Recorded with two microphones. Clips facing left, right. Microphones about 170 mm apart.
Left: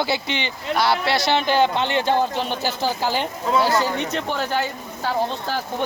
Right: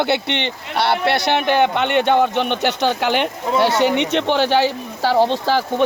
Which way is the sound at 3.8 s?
80° right.